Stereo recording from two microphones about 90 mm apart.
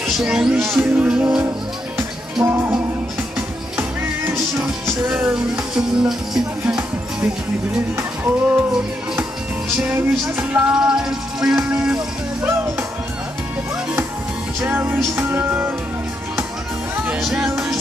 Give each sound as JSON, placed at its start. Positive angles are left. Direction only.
{"t": 0.0, "sound": "music", "side_deg": -5}
{"t": 0.7, "sound": "music", "side_deg": -25}
{"t": 1.0, "sound": "music", "side_deg": -10}
{"t": 2.4, "sound": "music", "side_deg": -25}
{"t": 5.3, "sound": "music", "side_deg": -5}
{"t": 7.9, "sound": "music", "side_deg": -25}
{"t": 9.8, "sound": "music", "side_deg": -20}
{"t": 14.6, "sound": "music", "side_deg": -20}
{"t": 17.2, "sound": "music", "side_deg": -5}